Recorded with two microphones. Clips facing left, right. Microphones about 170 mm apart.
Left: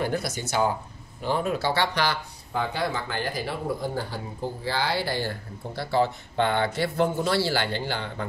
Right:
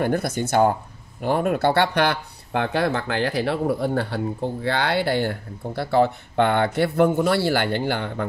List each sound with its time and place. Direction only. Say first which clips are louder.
0.0 s speech: right 5 dB; 55° right (ahead or behind)